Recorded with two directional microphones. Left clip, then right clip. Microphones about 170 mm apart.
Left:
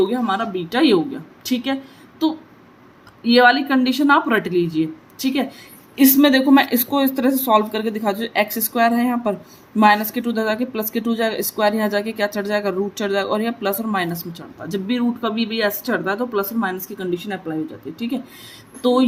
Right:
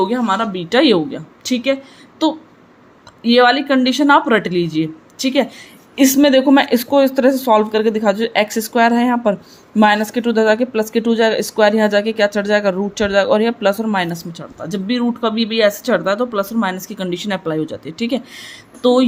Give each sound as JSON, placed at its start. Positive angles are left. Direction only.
{"t": 0.1, "sound": "speech", "side_deg": -35}
{"t": 17.0, "sound": "speech", "side_deg": -50}